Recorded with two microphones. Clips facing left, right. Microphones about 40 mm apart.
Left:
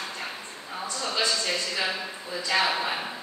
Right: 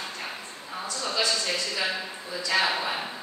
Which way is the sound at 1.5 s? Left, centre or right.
Centre.